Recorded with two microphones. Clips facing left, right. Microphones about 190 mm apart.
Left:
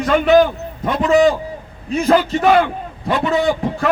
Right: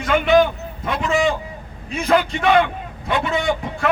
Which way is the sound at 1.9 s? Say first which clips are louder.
Left 8 dB; 35° left (ahead or behind).